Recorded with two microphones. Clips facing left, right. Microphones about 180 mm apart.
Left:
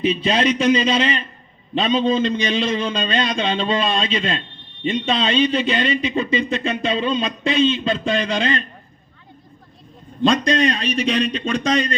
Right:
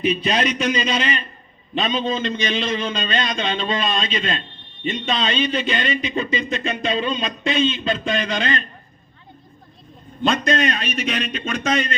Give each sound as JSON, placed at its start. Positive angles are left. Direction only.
{"t": 0.0, "sound": "a man's voice", "side_deg": 30}
{"t": 10.2, "sound": "a man's voice", "side_deg": 35}